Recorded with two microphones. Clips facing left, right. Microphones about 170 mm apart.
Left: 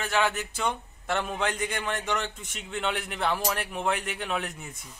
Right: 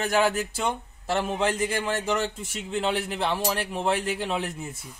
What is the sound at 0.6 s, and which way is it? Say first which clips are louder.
A man's voice: right 2 dB; 30° right (ahead or behind).